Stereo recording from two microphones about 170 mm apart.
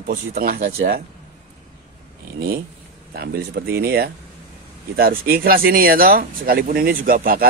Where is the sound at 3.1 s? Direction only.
65° right (ahead or behind).